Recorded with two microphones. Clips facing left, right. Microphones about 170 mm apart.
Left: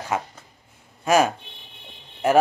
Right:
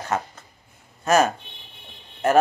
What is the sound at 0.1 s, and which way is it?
A man's voice, 10° left (ahead or behind).